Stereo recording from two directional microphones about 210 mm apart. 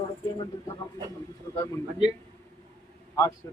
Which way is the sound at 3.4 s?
15° left (ahead or behind).